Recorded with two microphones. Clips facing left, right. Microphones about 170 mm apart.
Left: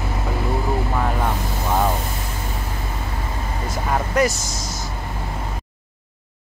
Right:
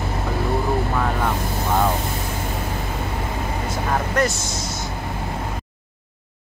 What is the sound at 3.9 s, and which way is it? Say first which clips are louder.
Vehicle: left 2 dB; centre (ahead or behind).